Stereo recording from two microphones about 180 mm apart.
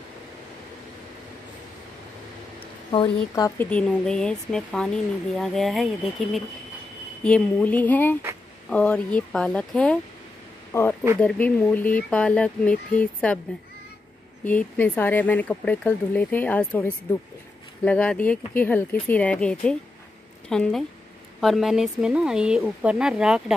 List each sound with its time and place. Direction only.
2.9 s speech: 25° left (ahead or behind)
3.7 s speech: 5° left (ahead or behind)
14.4 s speech: 10° left (ahead or behind)